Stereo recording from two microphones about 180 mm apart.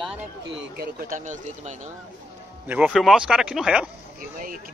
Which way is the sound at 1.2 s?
40° right (ahead or behind).